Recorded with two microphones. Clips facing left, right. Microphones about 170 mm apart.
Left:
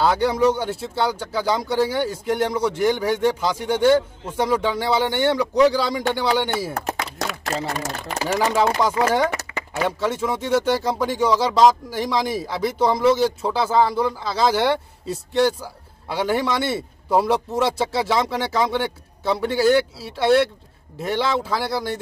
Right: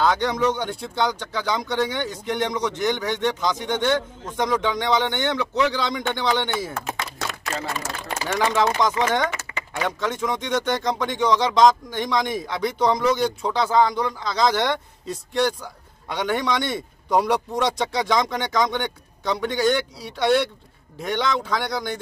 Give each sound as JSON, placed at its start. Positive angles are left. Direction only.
{"t": 0.0, "sound": "a man's voice", "side_deg": 10}
{"t": 6.9, "sound": "a sound", "side_deg": 40}
{"t": 8.4, "sound": "a man's voice", "side_deg": 5}